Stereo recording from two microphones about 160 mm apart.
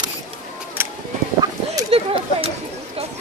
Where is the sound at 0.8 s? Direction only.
15° right (ahead or behind).